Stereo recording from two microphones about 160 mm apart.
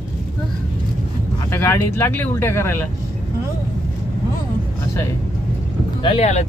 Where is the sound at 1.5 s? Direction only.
15° left (ahead or behind).